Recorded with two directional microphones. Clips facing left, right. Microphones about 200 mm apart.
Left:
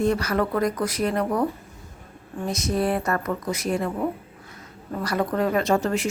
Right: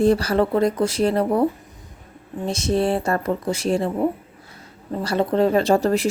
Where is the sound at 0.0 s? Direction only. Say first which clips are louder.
Right 5 dB; 30° right (ahead or behind).